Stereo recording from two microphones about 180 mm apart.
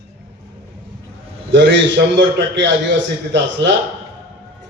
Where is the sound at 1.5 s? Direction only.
80° right.